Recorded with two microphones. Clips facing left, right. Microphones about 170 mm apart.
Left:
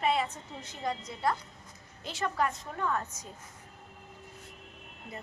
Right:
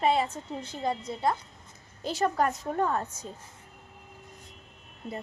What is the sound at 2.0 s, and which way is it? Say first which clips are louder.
A woman's voice: right 5 dB; 40° right (ahead or behind).